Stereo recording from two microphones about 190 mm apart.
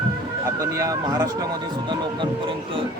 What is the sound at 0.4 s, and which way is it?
Speech, 15° right (ahead or behind).